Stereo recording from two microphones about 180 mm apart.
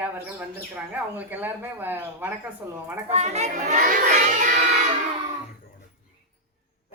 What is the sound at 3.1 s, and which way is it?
Speech, 40° right (ahead or behind).